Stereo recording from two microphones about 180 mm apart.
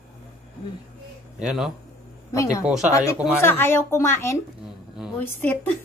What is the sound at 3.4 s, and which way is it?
Speech, 15° left (ahead or behind).